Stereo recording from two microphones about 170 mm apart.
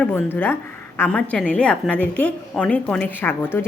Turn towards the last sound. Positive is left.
turn(degrees=15)  # may be behind; listen again after turning